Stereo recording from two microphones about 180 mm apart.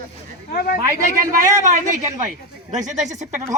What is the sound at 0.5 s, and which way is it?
Speech, 50° left (ahead or behind).